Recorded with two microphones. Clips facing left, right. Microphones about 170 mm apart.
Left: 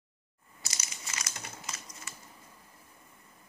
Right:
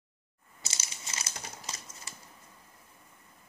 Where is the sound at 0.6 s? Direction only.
25° right (ahead or behind).